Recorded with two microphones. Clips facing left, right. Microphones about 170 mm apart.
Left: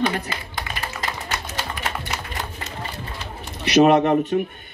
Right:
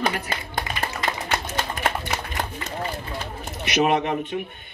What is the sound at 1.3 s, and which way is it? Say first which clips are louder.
Music: right 3 dB; 50° right (ahead or behind).